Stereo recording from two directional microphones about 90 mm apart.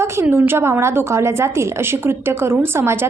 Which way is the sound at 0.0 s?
30° right (ahead or behind).